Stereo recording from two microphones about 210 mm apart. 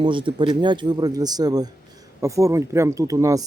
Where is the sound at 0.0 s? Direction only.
25° right (ahead or behind).